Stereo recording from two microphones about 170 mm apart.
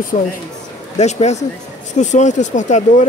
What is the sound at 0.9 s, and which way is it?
Speech, 40° left (ahead or behind).